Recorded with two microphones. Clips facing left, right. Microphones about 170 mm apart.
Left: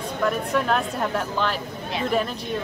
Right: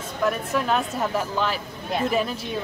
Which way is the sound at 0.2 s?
Centre (ahead or behind).